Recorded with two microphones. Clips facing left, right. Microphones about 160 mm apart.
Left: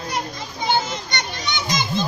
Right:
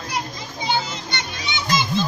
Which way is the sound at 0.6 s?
50° left (ahead or behind).